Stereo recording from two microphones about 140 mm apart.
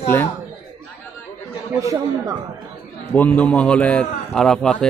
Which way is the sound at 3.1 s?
10° left (ahead or behind).